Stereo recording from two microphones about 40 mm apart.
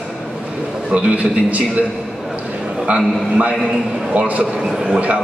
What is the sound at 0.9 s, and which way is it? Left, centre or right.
Speech, right.